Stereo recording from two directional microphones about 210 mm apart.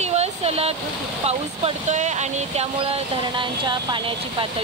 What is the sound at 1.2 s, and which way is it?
Speech, 30° right (ahead or behind).